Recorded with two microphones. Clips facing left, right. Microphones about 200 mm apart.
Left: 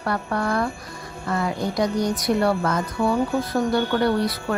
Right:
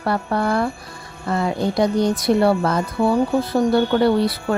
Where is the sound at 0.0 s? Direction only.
30° right (ahead or behind).